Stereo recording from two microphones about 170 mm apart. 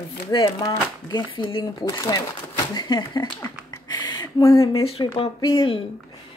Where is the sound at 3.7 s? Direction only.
25° left (ahead or behind).